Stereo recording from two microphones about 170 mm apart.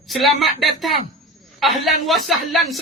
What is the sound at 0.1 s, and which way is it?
A man's voice, centre (ahead or behind).